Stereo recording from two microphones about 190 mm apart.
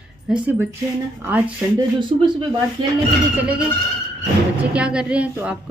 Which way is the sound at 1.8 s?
25° right (ahead or behind).